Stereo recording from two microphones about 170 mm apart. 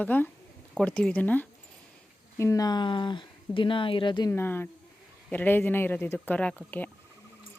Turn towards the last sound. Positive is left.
turn(degrees=10)  # may be behind; listen again after turning